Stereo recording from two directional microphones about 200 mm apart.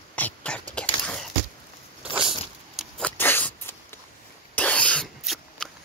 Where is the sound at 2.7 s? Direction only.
5° left (ahead or behind).